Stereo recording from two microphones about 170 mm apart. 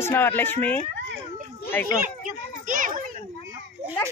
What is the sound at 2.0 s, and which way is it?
Speech, 50° right (ahead or behind).